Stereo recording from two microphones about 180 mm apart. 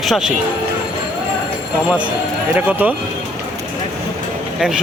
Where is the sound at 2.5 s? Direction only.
10° right (ahead or behind).